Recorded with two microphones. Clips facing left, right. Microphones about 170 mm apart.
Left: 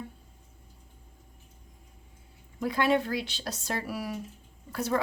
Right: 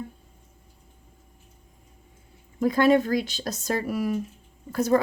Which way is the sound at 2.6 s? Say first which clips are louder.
Right 7 dB; 45° right (ahead or behind).